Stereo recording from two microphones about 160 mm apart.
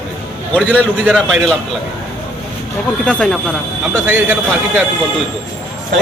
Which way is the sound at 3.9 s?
10° right (ahead or behind).